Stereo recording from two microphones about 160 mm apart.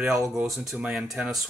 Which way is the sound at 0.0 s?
Centre (ahead or behind).